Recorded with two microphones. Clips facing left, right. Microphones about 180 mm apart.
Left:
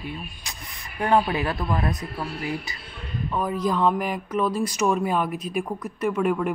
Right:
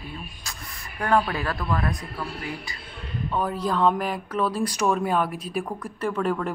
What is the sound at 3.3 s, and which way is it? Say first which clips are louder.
A man's voice: left 1 dB; 10° left (ahead or behind).